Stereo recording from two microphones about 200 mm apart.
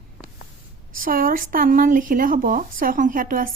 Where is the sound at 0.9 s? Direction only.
45° right (ahead or behind).